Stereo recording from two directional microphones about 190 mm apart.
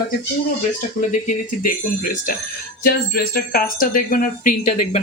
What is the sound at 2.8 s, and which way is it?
Speech, 50° left (ahead or behind).